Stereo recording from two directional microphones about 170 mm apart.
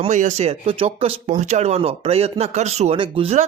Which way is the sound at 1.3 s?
45° right (ahead or behind).